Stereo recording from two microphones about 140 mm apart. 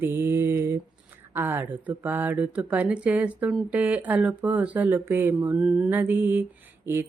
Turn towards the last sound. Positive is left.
turn(degrees=-15)  # may be behind; listen again after turning